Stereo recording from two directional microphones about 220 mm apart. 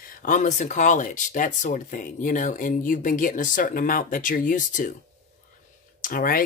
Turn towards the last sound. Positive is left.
turn(degrees=40)  # may be behind; listen again after turning